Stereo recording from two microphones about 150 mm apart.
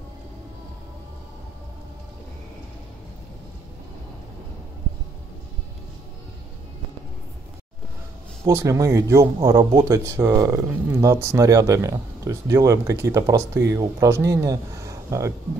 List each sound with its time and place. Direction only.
8.5 s speech: 20° right (ahead or behind)